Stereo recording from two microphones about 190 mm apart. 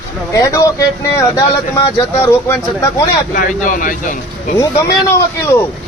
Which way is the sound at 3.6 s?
45° left (ahead or behind).